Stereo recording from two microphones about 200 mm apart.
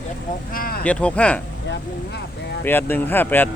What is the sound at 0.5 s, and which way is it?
Speech, 45° left (ahead or behind).